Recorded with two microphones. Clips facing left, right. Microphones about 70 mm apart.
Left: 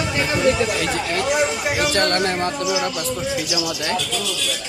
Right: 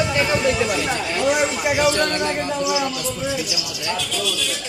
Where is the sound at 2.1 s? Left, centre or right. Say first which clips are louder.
Left 2 dB; left.